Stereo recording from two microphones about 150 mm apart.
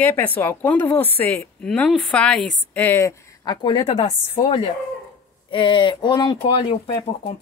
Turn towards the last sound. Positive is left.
turn(degrees=45)  # may be behind; listen again after turning